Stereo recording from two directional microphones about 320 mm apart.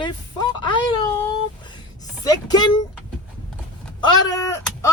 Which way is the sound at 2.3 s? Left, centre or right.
Centre.